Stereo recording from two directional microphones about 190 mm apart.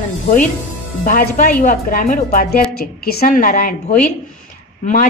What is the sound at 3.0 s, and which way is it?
A woman's voice, 55° left (ahead or behind).